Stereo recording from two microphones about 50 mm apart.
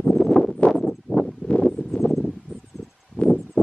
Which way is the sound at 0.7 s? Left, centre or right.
Centre.